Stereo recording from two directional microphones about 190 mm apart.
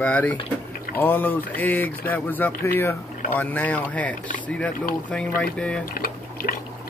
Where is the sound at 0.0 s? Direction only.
5° left (ahead or behind).